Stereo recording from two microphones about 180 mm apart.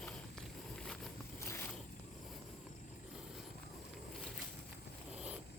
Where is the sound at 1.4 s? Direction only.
15° left (ahead or behind).